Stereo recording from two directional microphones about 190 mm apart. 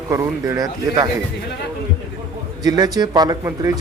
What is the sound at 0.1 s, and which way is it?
Speech, 15° right (ahead or behind).